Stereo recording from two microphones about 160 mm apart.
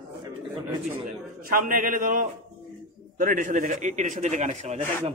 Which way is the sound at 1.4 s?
60° right (ahead or behind).